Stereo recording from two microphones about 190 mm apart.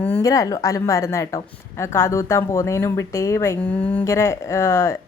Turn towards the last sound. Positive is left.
turn(degrees=15)  # may be behind; listen again after turning